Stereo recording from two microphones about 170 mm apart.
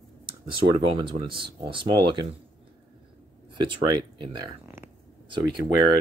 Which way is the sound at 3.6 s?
30° right (ahead or behind).